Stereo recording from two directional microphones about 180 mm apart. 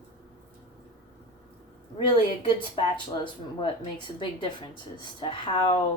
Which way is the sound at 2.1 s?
30° left (ahead or behind).